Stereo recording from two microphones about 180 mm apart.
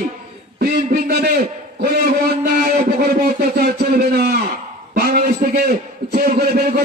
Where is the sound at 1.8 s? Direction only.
60° right (ahead or behind).